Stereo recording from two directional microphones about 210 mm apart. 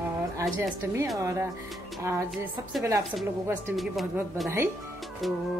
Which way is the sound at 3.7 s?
Centre (ahead or behind).